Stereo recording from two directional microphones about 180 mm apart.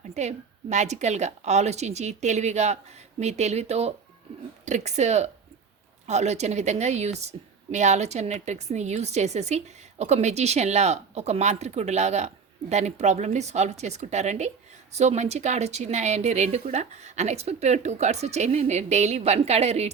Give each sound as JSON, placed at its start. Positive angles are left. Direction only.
{"t": 0.0, "sound": "a woman's voice", "side_deg": -40}